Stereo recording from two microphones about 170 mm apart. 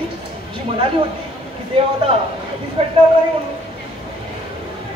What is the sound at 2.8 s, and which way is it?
Speech, 35° right (ahead or behind).